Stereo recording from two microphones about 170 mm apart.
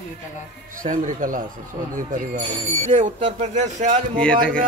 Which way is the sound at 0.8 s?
50° right (ahead or behind).